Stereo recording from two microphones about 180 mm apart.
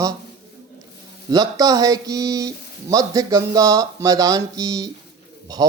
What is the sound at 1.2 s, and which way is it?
Speech, 20° right (ahead or behind).